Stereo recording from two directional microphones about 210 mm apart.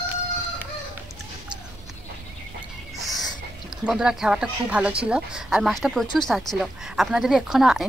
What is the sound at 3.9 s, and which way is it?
Speech, 5° right (ahead or behind).